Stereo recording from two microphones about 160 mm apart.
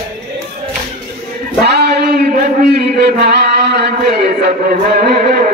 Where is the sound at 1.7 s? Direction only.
90° right.